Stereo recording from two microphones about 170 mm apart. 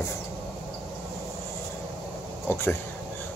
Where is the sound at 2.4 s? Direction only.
15° left (ahead or behind).